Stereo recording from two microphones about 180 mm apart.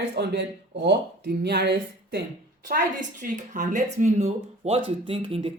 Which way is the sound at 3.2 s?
50° right (ahead or behind).